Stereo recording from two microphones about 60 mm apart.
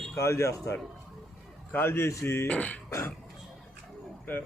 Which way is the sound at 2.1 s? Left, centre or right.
Left.